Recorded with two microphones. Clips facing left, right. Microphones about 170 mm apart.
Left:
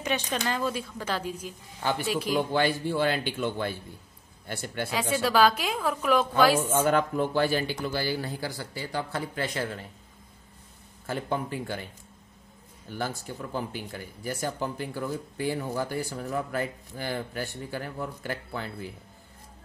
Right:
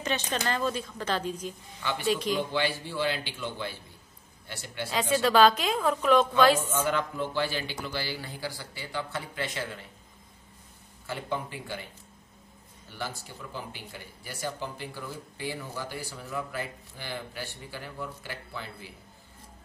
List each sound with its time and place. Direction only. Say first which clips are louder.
0.0 s a woman's voice: left 1 dB; 10° left (ahead or behind)
1.8 s speech: left 5 dB; 45° left (ahead or behind)
2.0 s a woman's voice: right 1 dB; 5° left (ahead or behind)
2.3 s speech: left 4 dB; 50° left (ahead or behind)
5.1 s a woman's voice: right 2 dB; 10° left (ahead or behind)
6.7 s speech: left 5 dB; 50° left (ahead or behind)
11.1 s speech: left 4 dB; 45° left (ahead or behind)
12.9 s speech: left 5 dB; 50° left (ahead or behind)